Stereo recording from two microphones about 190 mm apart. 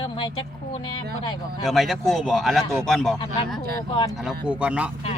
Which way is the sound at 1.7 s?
Centre (ahead or behind).